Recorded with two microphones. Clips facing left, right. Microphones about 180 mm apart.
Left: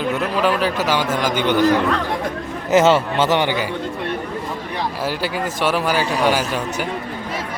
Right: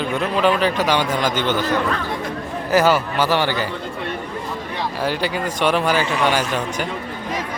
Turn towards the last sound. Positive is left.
turn(degrees=5)  # may be behind; listen again after turning